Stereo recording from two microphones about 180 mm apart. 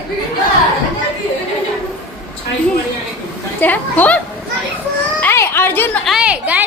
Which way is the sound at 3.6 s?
10° left (ahead or behind).